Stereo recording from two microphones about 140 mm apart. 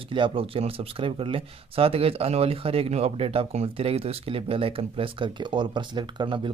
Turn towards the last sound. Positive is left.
turn(degrees=-35)  # may be behind; listen again after turning